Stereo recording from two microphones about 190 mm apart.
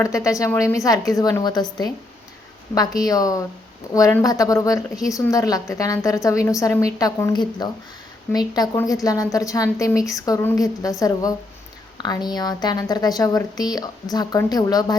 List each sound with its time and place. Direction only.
0.0 s a woman's voice: 15° left (ahead or behind)